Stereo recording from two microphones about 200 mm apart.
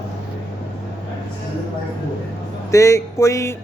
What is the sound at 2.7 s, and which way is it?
Speech, 15° left (ahead or behind).